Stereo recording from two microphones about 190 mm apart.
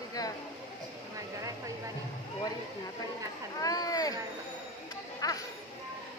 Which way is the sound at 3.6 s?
20° left (ahead or behind).